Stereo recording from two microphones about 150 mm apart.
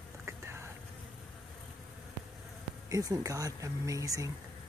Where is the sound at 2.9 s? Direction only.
25° right (ahead or behind).